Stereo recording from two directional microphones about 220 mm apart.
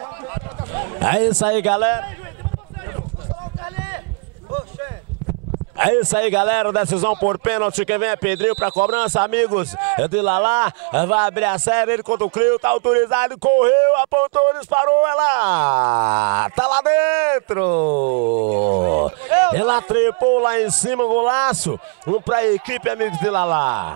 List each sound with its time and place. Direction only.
0.7 s speech: 15° right (ahead or behind)
5.8 s speech: 15° right (ahead or behind)
17.6 s speech: 35° right (ahead or behind)
19.2 s speech: 15° right (ahead or behind)